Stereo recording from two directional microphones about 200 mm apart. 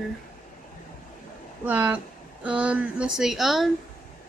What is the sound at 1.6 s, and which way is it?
A woman's voice, 10° right (ahead or behind).